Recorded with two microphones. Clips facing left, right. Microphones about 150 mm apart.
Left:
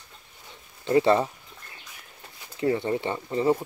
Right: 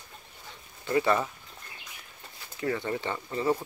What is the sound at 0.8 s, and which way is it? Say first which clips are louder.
Speech: left 5 dB; 25° left (ahead or behind).